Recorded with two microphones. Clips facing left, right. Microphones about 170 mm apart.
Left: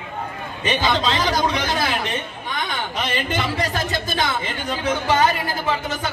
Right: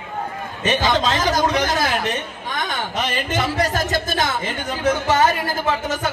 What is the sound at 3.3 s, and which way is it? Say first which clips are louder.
Speech: right 5 dB; 45° right (ahead or behind).